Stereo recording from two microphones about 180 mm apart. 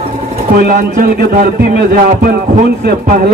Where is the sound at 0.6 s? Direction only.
50° right (ahead or behind).